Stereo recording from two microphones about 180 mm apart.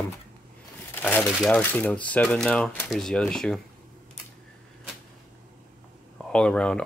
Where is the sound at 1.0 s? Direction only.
10° left (ahead or behind).